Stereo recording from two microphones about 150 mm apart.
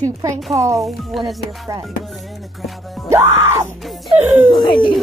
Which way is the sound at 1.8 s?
Centre (ahead or behind).